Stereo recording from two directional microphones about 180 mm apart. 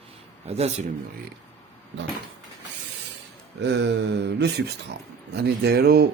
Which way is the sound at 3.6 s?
75° right (ahead or behind).